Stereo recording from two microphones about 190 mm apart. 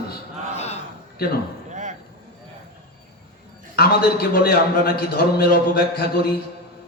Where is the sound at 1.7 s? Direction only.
40° right (ahead or behind).